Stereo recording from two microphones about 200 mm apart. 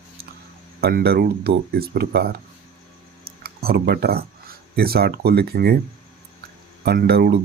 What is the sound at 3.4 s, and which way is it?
Speech, 50° right (ahead or behind).